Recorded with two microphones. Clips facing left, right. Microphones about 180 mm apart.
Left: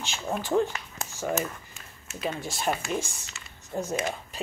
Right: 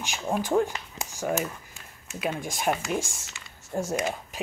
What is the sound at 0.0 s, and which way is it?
Speech, 15° right (ahead or behind).